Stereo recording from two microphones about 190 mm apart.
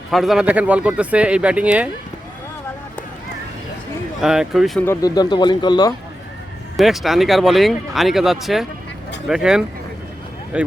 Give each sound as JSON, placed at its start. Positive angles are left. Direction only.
{"t": 0.1, "sound": "speech", "side_deg": 0}
{"t": 4.2, "sound": "speech", "side_deg": 0}
{"t": 4.9, "sound": "speech", "side_deg": 20}
{"t": 6.7, "sound": "speech", "side_deg": 0}